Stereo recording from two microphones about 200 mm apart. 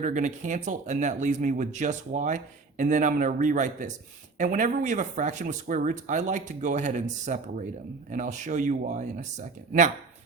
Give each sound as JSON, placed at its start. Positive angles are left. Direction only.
{"t": 0.0, "sound": "speech", "side_deg": -40}